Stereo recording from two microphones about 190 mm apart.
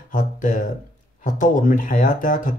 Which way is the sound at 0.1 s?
45° left (ahead or behind).